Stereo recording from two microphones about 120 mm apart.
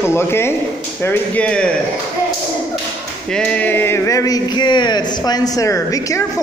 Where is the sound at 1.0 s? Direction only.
15° left (ahead or behind).